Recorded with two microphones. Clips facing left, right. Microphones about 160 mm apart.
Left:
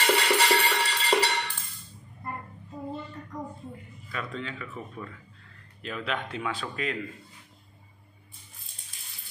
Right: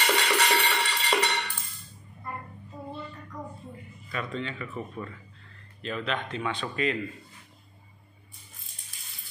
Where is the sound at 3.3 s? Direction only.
20° left (ahead or behind).